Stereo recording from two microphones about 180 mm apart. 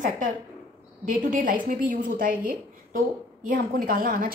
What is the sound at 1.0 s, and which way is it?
Speech, 50° right (ahead or behind).